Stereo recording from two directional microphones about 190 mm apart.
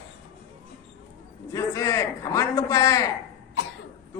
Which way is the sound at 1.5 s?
15° left (ahead or behind).